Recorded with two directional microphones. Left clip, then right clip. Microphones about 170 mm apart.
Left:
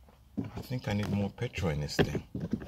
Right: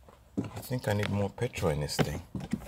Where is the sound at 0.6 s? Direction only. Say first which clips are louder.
Right 5 dB; 60° right (ahead or behind).